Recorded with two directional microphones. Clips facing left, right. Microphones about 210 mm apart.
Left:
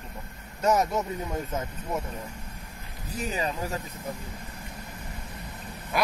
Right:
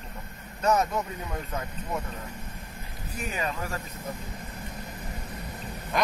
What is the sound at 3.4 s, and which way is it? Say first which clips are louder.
Speech: even; 20° left (ahead or behind).